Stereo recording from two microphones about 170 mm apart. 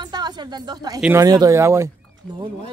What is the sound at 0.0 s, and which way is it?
A woman's voice, 25° right (ahead or behind).